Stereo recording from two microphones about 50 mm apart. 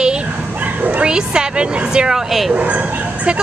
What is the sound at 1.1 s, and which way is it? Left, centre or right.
Speech, centre.